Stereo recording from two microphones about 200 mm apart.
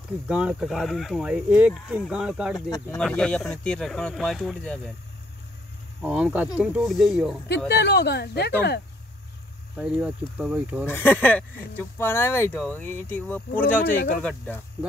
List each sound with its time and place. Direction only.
0.3 s speech: 5° right (ahead or behind)
6.0 s speech: 5° right (ahead or behind)
7.4 s speech: 55° left (ahead or behind)
9.8 s speech: 5° right (ahead or behind)
10.9 s speech: 10° left (ahead or behind)